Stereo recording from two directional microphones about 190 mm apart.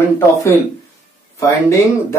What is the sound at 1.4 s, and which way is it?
Speech, 15° left (ahead or behind).